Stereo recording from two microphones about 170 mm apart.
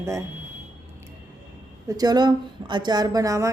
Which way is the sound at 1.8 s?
20° right (ahead or behind).